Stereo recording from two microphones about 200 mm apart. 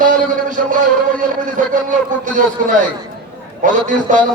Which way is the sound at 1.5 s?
40° right (ahead or behind).